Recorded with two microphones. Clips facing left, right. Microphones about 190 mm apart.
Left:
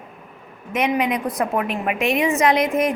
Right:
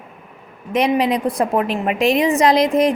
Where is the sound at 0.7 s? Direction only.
35° right (ahead or behind).